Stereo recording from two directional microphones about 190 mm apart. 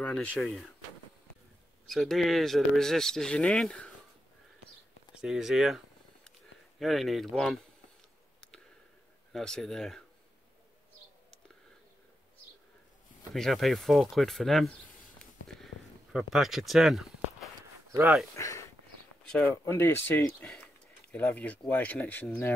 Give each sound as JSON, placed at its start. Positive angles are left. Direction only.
{"t": 0.0, "sound": "speech", "side_deg": 5}
{"t": 1.9, "sound": "speech", "side_deg": 0}
{"t": 5.1, "sound": "speech", "side_deg": -5}
{"t": 6.8, "sound": "speech", "side_deg": 0}
{"t": 9.3, "sound": "speech", "side_deg": 5}
{"t": 13.3, "sound": "speech", "side_deg": 0}
{"t": 15.4, "sound": "a sound", "side_deg": 0}
{"t": 17.9, "sound": "speech", "side_deg": -10}
{"t": 18.3, "sound": "speech", "side_deg": 15}